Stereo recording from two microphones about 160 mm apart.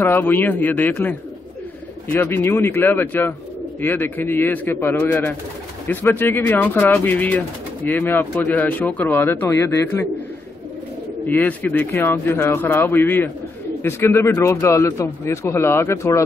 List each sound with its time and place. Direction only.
0.0 s speech: 15° left (ahead or behind)
2.1 s speech: 15° left (ahead or behind)
11.2 s speech: 10° left (ahead or behind)